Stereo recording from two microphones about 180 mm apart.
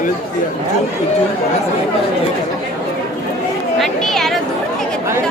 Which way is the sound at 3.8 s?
Centre (ahead or behind).